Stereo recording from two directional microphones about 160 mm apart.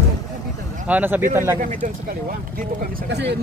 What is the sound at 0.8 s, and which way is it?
Speech, 10° right (ahead or behind).